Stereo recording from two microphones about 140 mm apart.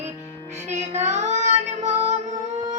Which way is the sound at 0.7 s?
50° right (ahead or behind).